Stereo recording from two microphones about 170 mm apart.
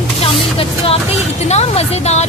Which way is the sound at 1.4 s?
40° left (ahead or behind).